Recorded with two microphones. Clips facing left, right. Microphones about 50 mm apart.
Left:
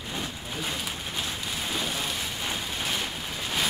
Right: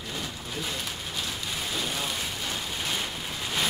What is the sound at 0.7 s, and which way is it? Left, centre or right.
Rain on surface, centre.